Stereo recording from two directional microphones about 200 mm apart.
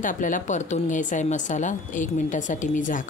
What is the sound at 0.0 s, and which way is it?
Speech, 40° left (ahead or behind).